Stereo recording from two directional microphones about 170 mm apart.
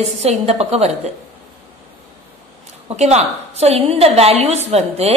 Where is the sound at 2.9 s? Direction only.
40° right (ahead or behind).